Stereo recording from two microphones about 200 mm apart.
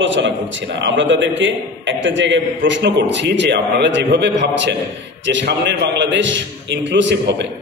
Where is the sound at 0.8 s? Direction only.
65° right (ahead or behind).